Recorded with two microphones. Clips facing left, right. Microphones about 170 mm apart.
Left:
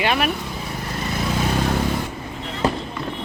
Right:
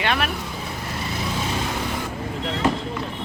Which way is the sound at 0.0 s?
10° left (ahead or behind).